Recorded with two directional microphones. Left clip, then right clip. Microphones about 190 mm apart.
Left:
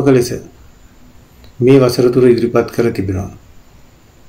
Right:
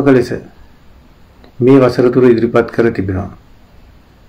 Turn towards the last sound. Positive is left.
turn(degrees=20)  # may be behind; listen again after turning